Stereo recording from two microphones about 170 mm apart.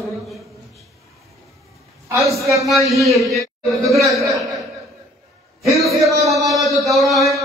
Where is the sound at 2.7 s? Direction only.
Centre (ahead or behind).